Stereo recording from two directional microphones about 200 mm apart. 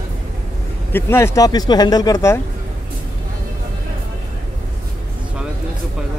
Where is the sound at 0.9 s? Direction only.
10° left (ahead or behind).